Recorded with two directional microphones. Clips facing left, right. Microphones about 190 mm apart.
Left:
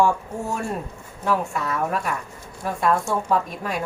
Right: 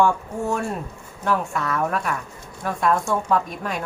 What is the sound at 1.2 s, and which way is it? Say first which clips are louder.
Speech: even; 5° left (ahead or behind).